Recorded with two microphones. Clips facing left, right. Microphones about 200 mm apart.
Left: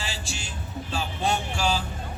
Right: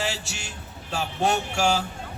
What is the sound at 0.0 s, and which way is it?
Music, 70° right (ahead or behind).